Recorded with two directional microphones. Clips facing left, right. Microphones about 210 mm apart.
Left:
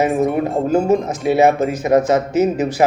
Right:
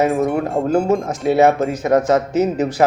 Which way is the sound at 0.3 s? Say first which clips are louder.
Left 1 dB; 20° left (ahead or behind).